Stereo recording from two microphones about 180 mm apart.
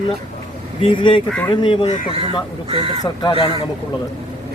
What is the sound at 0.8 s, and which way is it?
Speech, 25° left (ahead or behind).